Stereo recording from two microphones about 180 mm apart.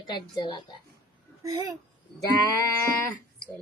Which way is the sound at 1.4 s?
20° right (ahead or behind).